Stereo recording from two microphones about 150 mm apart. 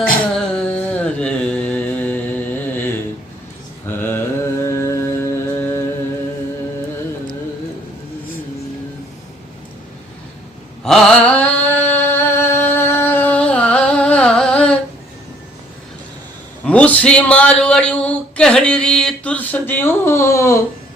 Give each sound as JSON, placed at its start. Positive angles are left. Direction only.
{"t": 0.3, "sound": "mantra", "side_deg": 10}
{"t": 10.8, "sound": "mantra", "side_deg": 5}
{"t": 16.6, "sound": "a sound", "side_deg": 10}